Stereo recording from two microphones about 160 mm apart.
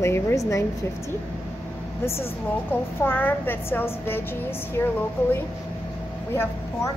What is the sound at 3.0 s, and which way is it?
A woman's voice, 10° left (ahead or behind).